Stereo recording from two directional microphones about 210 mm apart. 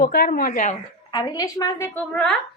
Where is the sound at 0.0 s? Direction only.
45° left (ahead or behind).